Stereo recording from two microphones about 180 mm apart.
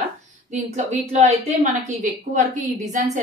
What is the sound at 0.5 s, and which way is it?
A woman's voice, 40° right (ahead or behind).